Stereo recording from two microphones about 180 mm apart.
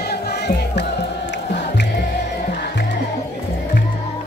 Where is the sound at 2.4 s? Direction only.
60° left (ahead or behind).